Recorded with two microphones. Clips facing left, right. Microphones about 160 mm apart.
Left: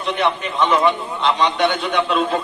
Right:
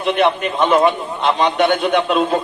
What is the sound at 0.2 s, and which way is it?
A man's voice, 55° right (ahead or behind).